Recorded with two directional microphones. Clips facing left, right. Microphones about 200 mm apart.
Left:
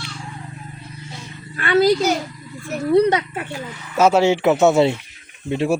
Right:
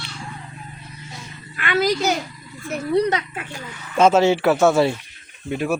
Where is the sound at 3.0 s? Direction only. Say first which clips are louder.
Left 4 dB; 30° left (ahead or behind).